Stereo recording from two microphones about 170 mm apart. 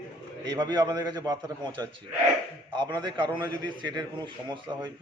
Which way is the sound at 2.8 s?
25° right (ahead or behind).